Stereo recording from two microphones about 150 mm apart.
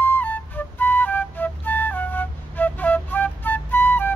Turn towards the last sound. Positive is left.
turn(degrees=15)  # may be behind; listen again after turning